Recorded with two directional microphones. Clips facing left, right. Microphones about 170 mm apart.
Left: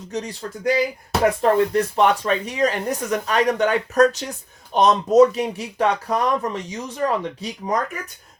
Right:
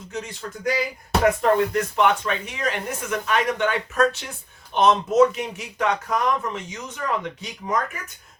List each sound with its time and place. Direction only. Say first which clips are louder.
0.1 s speech: left 4 dB; 35° left (ahead or behind)